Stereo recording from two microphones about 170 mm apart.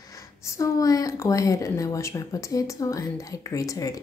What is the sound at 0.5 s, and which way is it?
Speech, 20° left (ahead or behind).